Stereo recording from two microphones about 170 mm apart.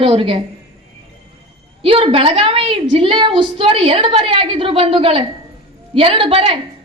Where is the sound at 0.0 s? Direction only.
30° right (ahead or behind).